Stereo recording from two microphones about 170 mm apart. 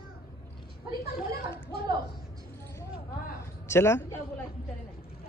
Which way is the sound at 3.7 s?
15° left (ahead or behind).